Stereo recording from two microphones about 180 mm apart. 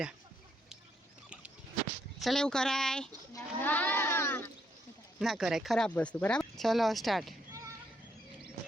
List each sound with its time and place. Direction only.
2.1 s speech: centre (ahead or behind)
3.3 s livestock: 10° left (ahead or behind)
5.2 s speech: centre (ahead or behind)